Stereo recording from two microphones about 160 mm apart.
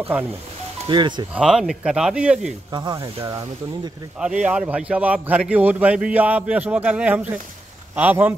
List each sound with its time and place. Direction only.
0.8 s speech: 30° right (ahead or behind)
1.3 s speech: 5° right (ahead or behind)
2.7 s speech: 25° right (ahead or behind)
4.2 s a man's voice: 5° right (ahead or behind)